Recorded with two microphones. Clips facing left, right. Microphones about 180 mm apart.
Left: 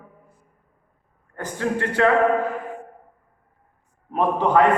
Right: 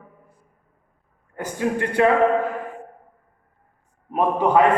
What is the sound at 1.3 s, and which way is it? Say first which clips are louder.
Speech: right 1 dB; 10° right (ahead or behind).